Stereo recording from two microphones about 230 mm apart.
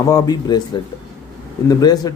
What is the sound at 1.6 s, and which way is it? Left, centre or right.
Speech, centre.